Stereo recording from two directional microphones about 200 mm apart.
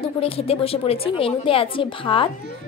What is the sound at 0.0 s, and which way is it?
A woman's voice, 30° left (ahead or behind).